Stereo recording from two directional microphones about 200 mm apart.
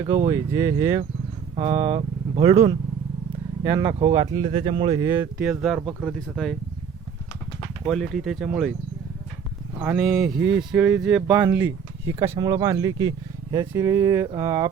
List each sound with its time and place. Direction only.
0.3 s speech: 15° right (ahead or behind)
1.5 s speech: 30° right (ahead or behind)
4.9 s speech: 10° right (ahead or behind)
7.9 s speech: centre (ahead or behind)
9.8 s speech: 10° right (ahead or behind)
12.2 s speech: 30° right (ahead or behind)
12.5 s speech: 15° right (ahead or behind)